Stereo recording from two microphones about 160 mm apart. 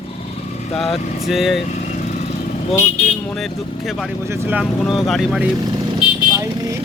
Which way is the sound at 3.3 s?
Centre (ahead or behind).